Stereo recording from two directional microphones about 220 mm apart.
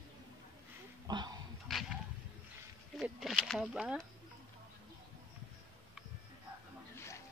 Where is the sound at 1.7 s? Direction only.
Centre (ahead or behind).